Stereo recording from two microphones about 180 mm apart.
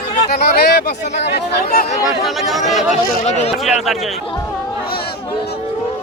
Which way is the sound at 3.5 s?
Centre (ahead or behind).